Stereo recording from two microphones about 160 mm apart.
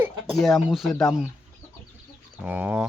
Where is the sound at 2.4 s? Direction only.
10° right (ahead or behind).